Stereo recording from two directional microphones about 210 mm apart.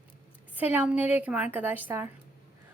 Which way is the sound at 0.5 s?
10° right (ahead or behind).